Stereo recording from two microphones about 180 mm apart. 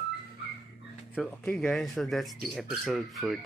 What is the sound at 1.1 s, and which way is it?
Speech, centre (ahead or behind).